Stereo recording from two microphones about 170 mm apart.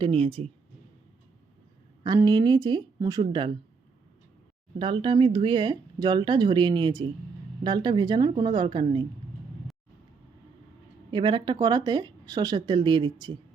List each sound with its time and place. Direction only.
0.0 s speech: 35° right (ahead or behind)
2.0 s speech: 25° right (ahead or behind)
4.8 s speech: 30° right (ahead or behind)
11.1 s speech: 25° right (ahead or behind)